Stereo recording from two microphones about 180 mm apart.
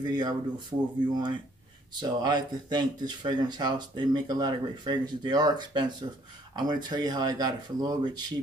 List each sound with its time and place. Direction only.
0.0 s speech: 25° right (ahead or behind)